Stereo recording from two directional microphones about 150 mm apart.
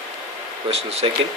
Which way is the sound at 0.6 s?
40° right (ahead or behind).